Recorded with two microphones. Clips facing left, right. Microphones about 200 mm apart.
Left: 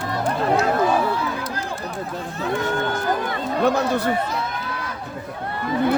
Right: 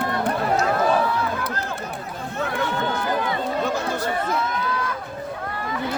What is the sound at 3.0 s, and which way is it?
Run, 55° left (ahead or behind).